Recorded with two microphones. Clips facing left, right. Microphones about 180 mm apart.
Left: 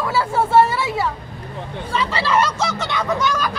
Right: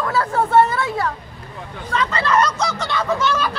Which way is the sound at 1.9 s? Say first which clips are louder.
Right 1 dB; 10° left (ahead or behind).